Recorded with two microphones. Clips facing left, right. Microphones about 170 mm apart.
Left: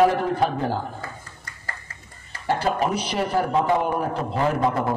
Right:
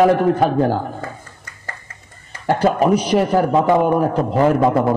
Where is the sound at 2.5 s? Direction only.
45° right (ahead or behind).